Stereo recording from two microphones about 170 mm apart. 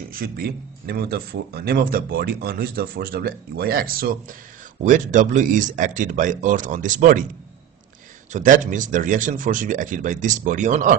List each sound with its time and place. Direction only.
0.1 s speech: 60° right (ahead or behind)
4.8 s speech: 45° right (ahead or behind)
8.3 s speech: 50° right (ahead or behind)